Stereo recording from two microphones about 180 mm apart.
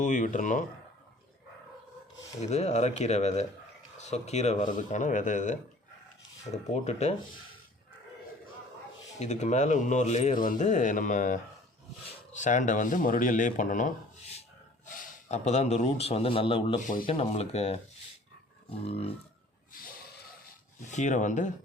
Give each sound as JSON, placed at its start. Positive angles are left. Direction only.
{"t": 0.0, "sound": "speech", "side_deg": 45}
{"t": 2.4, "sound": "speech", "side_deg": 40}
{"t": 9.1, "sound": "speech", "side_deg": 40}
{"t": 15.3, "sound": "speech", "side_deg": 40}
{"t": 16.8, "sound": "speech", "side_deg": 50}
{"t": 17.1, "sound": "speech", "side_deg": 35}
{"t": 18.9, "sound": "speech", "side_deg": 35}
{"t": 20.8, "sound": "speech", "side_deg": 45}